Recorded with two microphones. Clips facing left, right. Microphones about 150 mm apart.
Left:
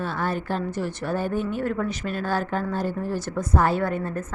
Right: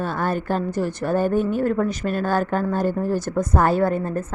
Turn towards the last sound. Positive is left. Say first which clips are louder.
# right 5 dB
turn(degrees=-35)  # may be behind; listen again after turning